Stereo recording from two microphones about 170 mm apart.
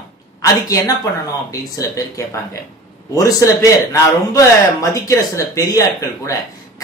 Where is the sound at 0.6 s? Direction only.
20° left (ahead or behind).